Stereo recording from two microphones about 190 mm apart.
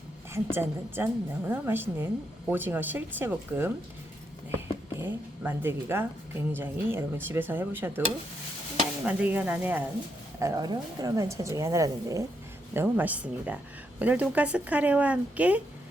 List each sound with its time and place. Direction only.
0.5 s a woman's voice: 10° right (ahead or behind)
9.0 s a woman's voice: 10° right (ahead or behind)
10.4 s a woman's voice: 20° right (ahead or behind)